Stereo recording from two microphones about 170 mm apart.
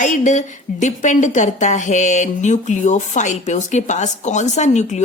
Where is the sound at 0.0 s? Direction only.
45° left (ahead or behind).